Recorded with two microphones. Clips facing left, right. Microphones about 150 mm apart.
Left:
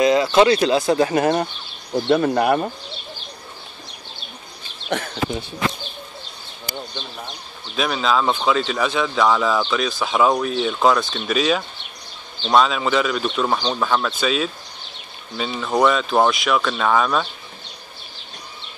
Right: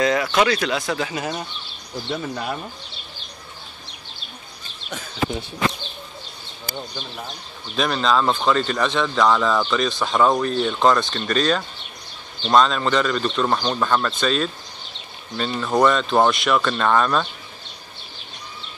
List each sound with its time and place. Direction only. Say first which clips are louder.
0.0 s speech: left 4 dB; 25° left (ahead or behind)
1.1 s speech: left 9 dB; 60° left (ahead or behind)
4.8 s speech: left 10 dB; 65° left (ahead or behind)
7.7 s speech: even; 5° left (ahead or behind)